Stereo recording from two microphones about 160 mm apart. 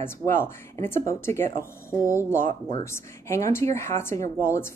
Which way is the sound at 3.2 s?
15° left (ahead or behind).